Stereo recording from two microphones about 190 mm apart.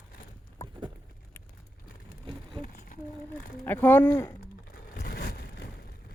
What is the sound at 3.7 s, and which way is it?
Speech, 10° left (ahead or behind).